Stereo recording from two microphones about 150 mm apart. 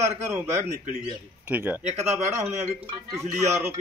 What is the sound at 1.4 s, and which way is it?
Speech, 10° right (ahead or behind).